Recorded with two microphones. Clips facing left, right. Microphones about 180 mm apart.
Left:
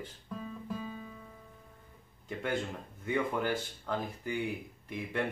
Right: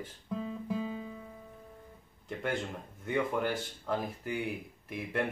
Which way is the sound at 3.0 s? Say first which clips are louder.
Right 1 dB; centre (ahead or behind).